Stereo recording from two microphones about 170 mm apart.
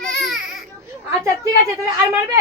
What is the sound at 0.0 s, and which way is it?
Baby cry, centre (ahead or behind).